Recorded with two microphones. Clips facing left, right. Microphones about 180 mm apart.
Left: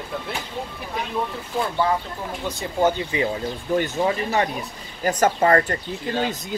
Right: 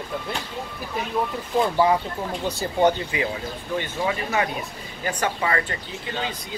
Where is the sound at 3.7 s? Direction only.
45° left (ahead or behind).